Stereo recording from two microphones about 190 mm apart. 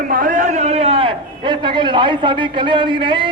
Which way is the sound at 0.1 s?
45° right (ahead or behind).